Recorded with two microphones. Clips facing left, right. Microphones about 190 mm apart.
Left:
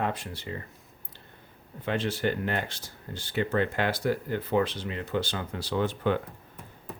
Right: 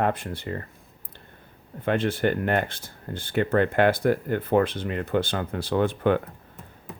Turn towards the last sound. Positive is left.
turn(degrees=-55)  # may be behind; listen again after turning